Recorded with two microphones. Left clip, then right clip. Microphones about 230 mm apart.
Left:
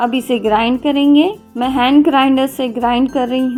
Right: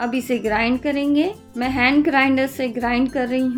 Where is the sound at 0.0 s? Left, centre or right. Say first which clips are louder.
Left 7 dB; centre.